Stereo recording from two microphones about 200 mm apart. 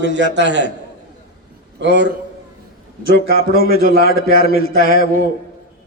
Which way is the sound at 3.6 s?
50° left (ahead or behind).